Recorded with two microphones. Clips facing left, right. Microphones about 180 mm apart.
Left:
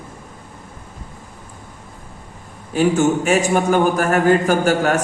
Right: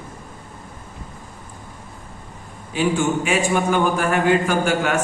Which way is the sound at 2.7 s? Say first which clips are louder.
Left 4 dB; 45° left (ahead or behind).